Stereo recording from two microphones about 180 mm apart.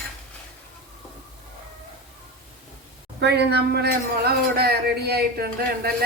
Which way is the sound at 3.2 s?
65° right (ahead or behind).